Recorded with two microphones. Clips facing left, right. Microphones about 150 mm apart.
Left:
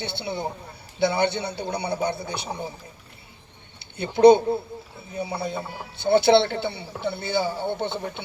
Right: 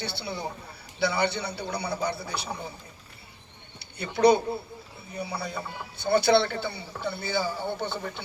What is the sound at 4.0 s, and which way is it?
Speech, 25° left (ahead or behind).